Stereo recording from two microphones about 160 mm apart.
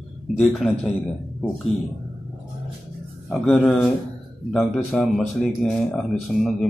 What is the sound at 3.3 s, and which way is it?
Speech, 5° left (ahead or behind).